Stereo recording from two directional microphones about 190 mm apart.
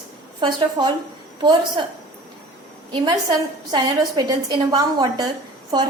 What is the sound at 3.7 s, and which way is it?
A woman's voice, 20° right (ahead or behind).